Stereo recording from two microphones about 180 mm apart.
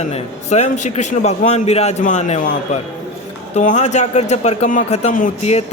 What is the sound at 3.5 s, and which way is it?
A man's voice, 40° left (ahead or behind).